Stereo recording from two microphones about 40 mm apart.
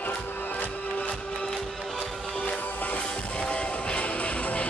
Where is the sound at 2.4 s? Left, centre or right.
Left.